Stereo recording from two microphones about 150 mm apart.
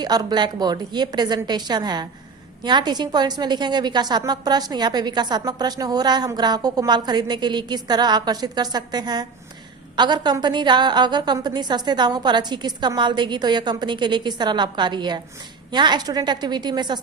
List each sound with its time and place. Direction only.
0.0 s a woman's voice: 25° right (ahead or behind)